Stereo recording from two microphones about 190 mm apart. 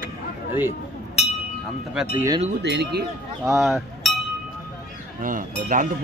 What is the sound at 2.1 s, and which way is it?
Speech, 15° right (ahead or behind).